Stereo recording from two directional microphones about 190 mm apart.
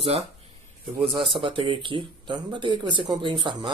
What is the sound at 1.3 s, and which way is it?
Speech, 25° right (ahead or behind).